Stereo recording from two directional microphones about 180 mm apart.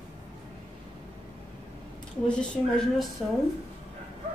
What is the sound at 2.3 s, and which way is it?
Speech, 5° left (ahead or behind).